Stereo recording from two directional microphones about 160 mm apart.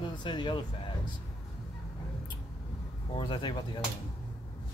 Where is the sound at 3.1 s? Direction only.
30° left (ahead or behind).